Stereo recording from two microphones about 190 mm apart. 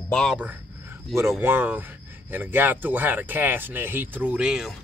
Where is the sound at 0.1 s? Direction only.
Centre (ahead or behind).